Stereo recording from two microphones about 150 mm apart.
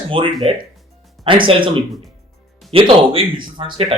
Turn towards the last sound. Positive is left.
turn(degrees=-35)  # may be behind; listen again after turning